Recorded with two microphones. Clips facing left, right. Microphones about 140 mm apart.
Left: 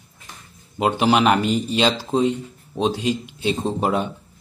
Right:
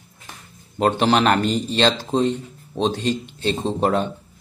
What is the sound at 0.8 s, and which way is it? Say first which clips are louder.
Speech: even; 10° left (ahead or behind).